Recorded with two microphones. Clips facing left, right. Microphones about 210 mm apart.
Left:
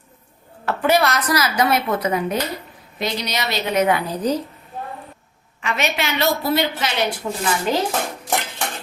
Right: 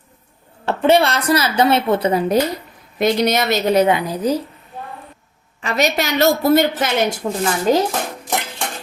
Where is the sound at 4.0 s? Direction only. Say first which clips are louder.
Right 2 dB; 10° right (ahead or behind).